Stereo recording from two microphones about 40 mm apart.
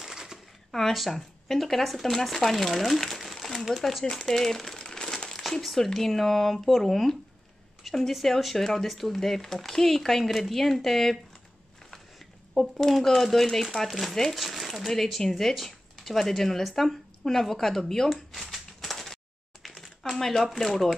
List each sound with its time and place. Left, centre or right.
0.0 s a sound: centre
0.7 s speech: centre
4.8 s crumpling: centre
5.4 s speech: centre
18.1 s a sound: centre
19.6 s typewriter: centre